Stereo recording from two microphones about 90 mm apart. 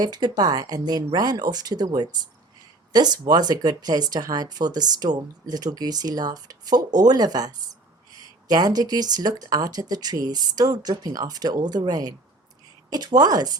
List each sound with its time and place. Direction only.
0.0 s speech: 50° right (ahead or behind)